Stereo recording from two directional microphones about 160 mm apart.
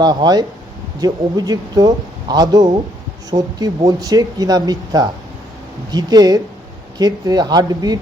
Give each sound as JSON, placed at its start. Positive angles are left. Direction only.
{"t": 0.0, "sound": "speech", "side_deg": -25}